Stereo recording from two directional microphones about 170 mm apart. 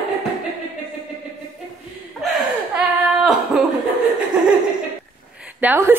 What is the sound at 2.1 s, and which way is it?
Chuckle, centre (ahead or behind).